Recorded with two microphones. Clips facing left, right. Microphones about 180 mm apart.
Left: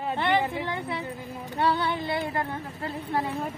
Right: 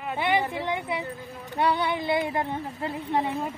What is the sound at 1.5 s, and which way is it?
A woman's voice, 15° right (ahead or behind).